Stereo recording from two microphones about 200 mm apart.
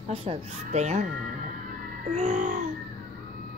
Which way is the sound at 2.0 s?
35° right (ahead or behind).